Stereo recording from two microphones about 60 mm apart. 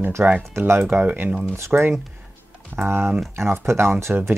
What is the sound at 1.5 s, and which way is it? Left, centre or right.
Speech, right.